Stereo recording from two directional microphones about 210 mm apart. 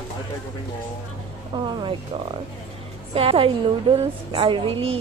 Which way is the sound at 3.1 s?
25° right (ahead or behind).